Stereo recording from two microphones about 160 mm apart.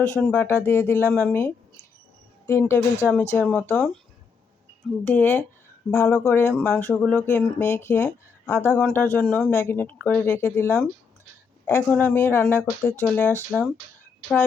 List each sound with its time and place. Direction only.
0.3 s speech: 15° left (ahead or behind)
5.0 s speech: 10° left (ahead or behind)